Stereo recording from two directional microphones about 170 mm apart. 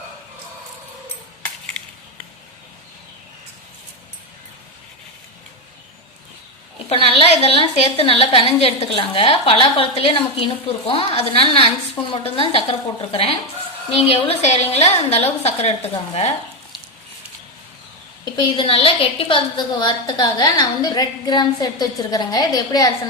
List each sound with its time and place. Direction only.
6.8 s a woman's voice: 35° left (ahead or behind)
18.3 s a woman's voice: 30° left (ahead or behind)